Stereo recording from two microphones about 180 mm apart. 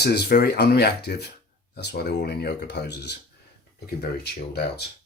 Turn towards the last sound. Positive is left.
turn(degrees=65)  # may be behind; listen again after turning